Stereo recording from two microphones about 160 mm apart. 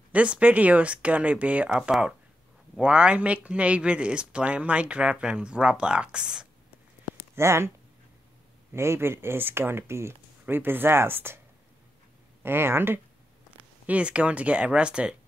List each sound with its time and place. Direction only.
0.1 s speech: 10° right (ahead or behind)
7.3 s speech: 15° right (ahead or behind)
8.7 s speech: 15° right (ahead or behind)
12.4 s speech: 15° right (ahead or behind)